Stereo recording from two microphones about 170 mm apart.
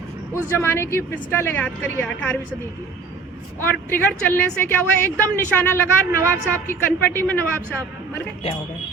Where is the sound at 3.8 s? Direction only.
10° left (ahead or behind).